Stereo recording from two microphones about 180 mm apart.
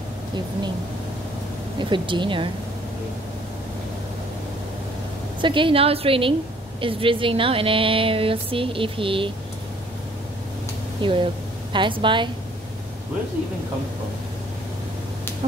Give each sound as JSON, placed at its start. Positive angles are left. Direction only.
{"t": 1.8, "sound": "speech", "side_deg": -25}
{"t": 5.4, "sound": "speech", "side_deg": -25}
{"t": 11.0, "sound": "speech", "side_deg": -30}